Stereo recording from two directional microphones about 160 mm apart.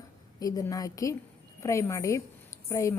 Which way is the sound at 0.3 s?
20° left (ahead or behind).